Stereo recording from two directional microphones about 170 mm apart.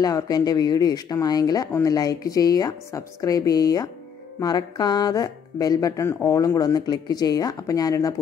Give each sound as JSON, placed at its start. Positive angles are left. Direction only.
{"t": 0.0, "sound": "speech", "side_deg": 20}